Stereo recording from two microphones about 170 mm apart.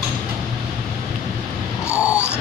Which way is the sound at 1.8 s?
15° left (ahead or behind).